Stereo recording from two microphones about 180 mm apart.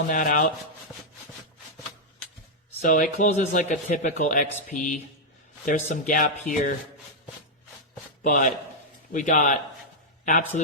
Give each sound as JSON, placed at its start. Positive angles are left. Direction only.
{"t": 0.1, "sound": "speech", "side_deg": 45}
{"t": 2.8, "sound": "speech", "side_deg": 45}
{"t": 8.2, "sound": "speech", "side_deg": 45}